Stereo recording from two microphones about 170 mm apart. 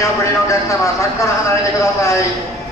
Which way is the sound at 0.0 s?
15° left (ahead or behind).